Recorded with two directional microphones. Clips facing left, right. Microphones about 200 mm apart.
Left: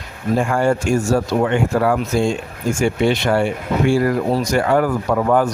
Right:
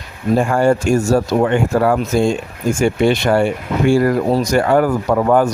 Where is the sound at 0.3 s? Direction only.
40° right (ahead or behind).